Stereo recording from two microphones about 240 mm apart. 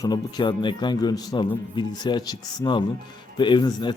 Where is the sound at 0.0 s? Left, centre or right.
Centre.